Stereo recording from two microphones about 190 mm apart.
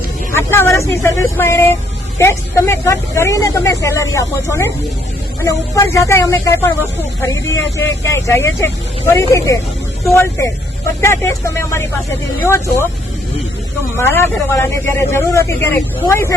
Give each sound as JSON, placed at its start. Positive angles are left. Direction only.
{"t": 0.3, "sound": "speech", "side_deg": 10}
{"t": 13.9, "sound": "speech", "side_deg": 15}